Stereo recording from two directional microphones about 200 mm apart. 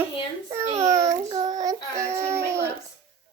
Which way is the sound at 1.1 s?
30° right (ahead or behind).